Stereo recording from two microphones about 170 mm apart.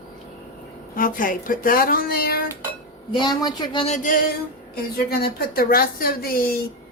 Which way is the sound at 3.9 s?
45° left (ahead or behind).